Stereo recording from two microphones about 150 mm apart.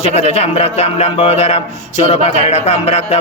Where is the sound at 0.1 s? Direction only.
45° left (ahead or behind).